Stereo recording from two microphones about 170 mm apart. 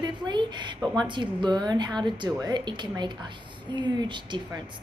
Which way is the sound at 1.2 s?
25° right (ahead or behind).